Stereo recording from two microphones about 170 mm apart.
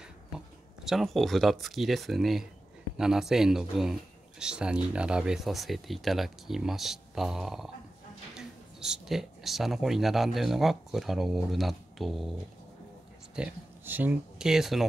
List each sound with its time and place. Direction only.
0.8 s speech: centre (ahead or behind)
13.4 s speech: 10° right (ahead or behind)